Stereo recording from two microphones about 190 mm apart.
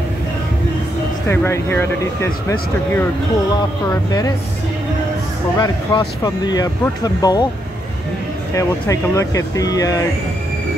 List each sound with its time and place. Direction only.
1.3 s speech: 10° left (ahead or behind)
3.9 s speech: 20° left (ahead or behind)
5.6 s speech: 20° left (ahead or behind)
8.5 s speech: 15° left (ahead or behind)